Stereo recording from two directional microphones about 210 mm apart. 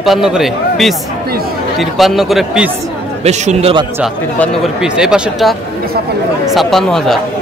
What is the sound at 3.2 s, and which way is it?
Speech, 30° right (ahead or behind).